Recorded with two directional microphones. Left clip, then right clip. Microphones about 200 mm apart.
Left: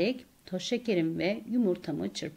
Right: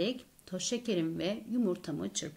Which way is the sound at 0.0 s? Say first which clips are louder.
Left 4 dB; 15° left (ahead or behind).